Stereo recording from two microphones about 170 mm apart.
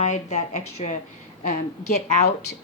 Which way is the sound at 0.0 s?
45° left (ahead or behind).